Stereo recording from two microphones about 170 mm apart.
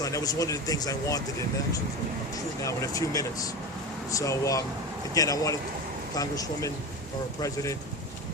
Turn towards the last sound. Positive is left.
turn(degrees=20)  # may be behind; listen again after turning